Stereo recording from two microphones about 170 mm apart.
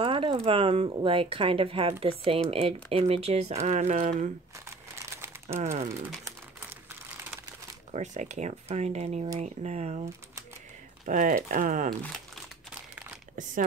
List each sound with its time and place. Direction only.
0.0 s speech: 30° right (ahead or behind)
5.1 s crumpling: 15° right (ahead or behind)
5.6 s speech: 45° right (ahead or behind)
6.2 s crumpling: 15° right (ahead or behind)
7.9 s speech: 45° right (ahead or behind)
11.1 s speech: 50° right (ahead or behind)